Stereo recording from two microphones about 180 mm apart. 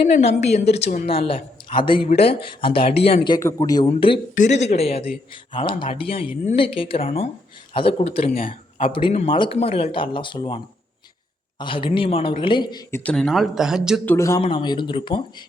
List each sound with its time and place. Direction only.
0.2 s a man's voice: 35° left (ahead or behind)
4.4 s speech: 40° left (ahead or behind)
11.6 s speech: 30° left (ahead or behind)
13.0 s speech: 5° left (ahead or behind)
14.0 s speech: 15° left (ahead or behind)